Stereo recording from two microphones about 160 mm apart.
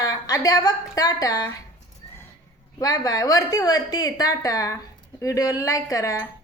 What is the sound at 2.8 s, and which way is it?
A woman's voice, 20° left (ahead or behind).